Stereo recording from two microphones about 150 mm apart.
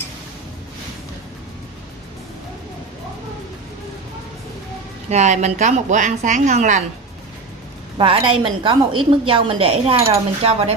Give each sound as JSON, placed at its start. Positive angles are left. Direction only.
{"t": 5.1, "sound": "a woman's voice", "side_deg": -50}
{"t": 8.0, "sound": "a woman's voice", "side_deg": -35}